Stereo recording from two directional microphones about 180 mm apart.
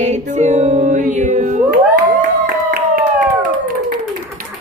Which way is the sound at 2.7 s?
50° right (ahead or behind).